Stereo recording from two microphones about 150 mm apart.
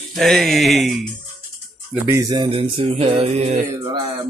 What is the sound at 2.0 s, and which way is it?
Speech, 20° right (ahead or behind).